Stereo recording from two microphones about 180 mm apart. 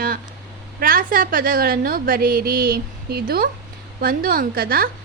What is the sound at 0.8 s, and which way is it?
A woman's voice, 50° right (ahead or behind).